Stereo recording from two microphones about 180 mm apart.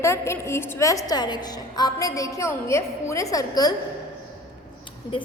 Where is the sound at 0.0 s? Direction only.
15° left (ahead or behind).